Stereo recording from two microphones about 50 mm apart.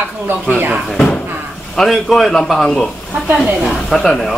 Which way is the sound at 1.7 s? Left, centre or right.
Centre.